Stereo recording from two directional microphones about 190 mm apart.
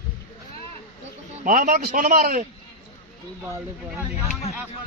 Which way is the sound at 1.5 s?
45° right (ahead or behind).